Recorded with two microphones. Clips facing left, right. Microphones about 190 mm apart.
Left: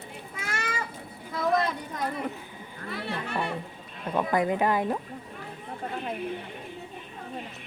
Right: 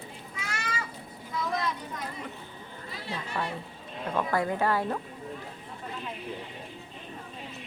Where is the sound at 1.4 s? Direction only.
60° left (ahead or behind).